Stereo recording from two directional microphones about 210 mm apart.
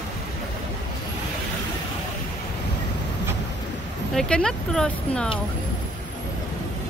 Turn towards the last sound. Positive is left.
turn(degrees=5)  # may be behind; listen again after turning